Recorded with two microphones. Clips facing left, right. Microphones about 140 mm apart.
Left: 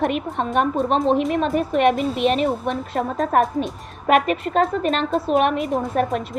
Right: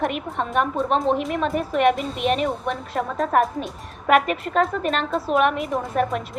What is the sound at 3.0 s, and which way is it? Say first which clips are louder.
Speech: left 1 dB; 40° left (ahead or behind).